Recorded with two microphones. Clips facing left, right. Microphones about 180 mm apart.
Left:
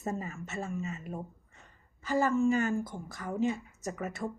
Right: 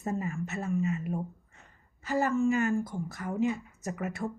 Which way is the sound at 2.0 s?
30° left (ahead or behind).